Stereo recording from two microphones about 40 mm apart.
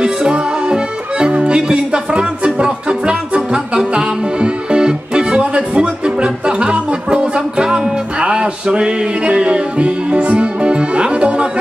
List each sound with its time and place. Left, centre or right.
0.0 s accordion: right
7.3 s music: right